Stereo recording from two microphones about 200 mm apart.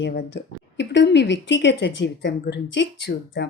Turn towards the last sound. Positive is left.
turn(degrees=60)  # may be behind; listen again after turning